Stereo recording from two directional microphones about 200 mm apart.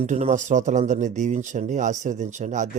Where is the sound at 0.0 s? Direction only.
35° right (ahead or behind).